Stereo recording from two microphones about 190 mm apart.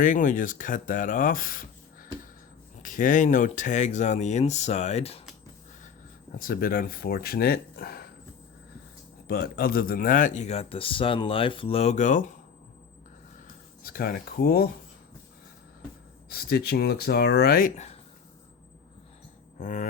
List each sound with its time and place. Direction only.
0.0 s speech: 45° left (ahead or behind)
6.3 s speech: 50° left (ahead or behind)
9.2 s speech: 55° left (ahead or behind)
13.8 s speech: 50° left (ahead or behind)
16.3 s speech: 55° left (ahead or behind)
19.5 s speech: 40° left (ahead or behind)